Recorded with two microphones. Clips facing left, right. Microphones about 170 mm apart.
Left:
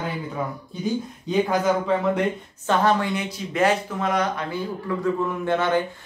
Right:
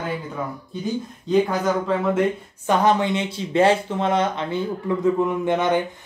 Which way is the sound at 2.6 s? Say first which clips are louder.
Right 2 dB; 15° right (ahead or behind).